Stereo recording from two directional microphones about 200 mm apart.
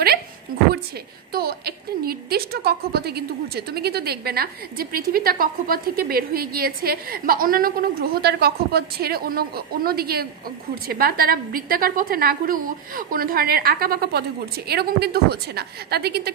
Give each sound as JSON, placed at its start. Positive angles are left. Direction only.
{"t": 1.3, "sound": "a woman's voice", "side_deg": -50}